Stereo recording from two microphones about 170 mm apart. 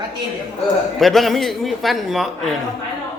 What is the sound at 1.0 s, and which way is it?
A man's voice, centre (ahead or behind).